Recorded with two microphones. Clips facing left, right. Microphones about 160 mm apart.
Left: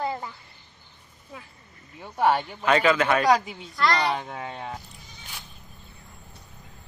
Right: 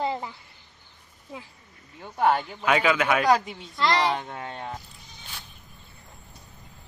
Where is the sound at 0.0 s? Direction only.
20° right (ahead or behind).